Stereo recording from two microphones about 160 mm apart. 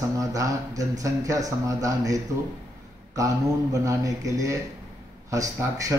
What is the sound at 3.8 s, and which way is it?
Speech, 20° right (ahead or behind).